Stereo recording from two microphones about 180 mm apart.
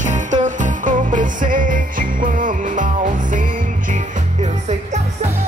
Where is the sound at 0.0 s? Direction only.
45° right (ahead or behind).